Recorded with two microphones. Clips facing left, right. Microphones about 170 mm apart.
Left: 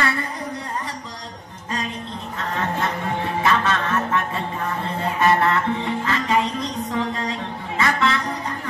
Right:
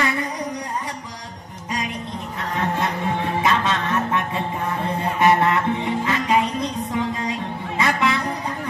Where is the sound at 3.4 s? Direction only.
20° right (ahead or behind).